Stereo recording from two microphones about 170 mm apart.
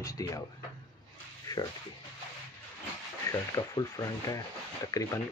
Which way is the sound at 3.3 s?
20° left (ahead or behind).